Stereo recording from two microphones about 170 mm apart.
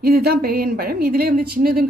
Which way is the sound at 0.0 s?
65° right (ahead or behind).